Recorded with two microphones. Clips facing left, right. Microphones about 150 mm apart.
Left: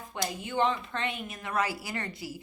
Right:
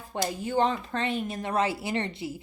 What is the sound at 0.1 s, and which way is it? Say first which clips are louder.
A woman's voice: right 6 dB; 35° right (ahead or behind).